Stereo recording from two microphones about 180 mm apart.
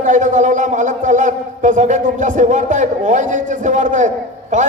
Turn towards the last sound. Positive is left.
turn(degrees=-45)  # may be behind; listen again after turning